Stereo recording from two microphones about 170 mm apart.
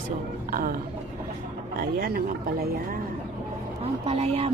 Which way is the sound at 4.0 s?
35° right (ahead or behind).